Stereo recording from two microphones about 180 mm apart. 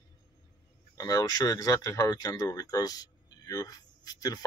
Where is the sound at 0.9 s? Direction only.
20° left (ahead or behind).